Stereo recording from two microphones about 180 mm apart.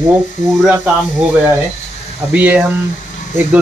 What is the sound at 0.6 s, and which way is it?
Speech, 5° right (ahead or behind).